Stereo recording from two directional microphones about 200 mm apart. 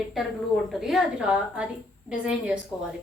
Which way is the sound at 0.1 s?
Centre (ahead or behind).